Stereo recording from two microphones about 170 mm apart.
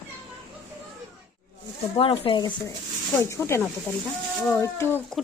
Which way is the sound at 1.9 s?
35° left (ahead or behind).